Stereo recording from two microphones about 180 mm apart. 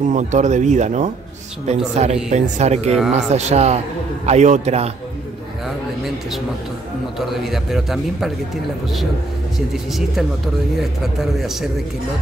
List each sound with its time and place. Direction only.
0.1 s speech: 40° right (ahead or behind)
7.2 s a man's voice: centre (ahead or behind)
9.9 s a man's voice: centre (ahead or behind)